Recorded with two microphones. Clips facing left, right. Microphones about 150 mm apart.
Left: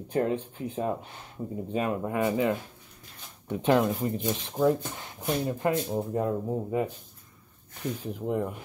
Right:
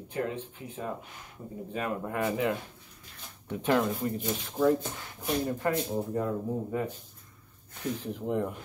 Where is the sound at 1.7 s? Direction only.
20° left (ahead or behind).